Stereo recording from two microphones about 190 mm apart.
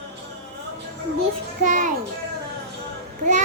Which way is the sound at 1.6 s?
45° right (ahead or behind).